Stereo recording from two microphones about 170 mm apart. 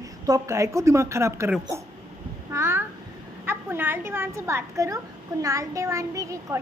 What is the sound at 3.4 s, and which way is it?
A woman's voice, 15° right (ahead or behind).